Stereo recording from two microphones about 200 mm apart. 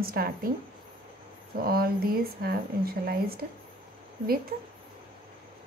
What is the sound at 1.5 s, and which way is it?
A woman's voice, 50° right (ahead or behind).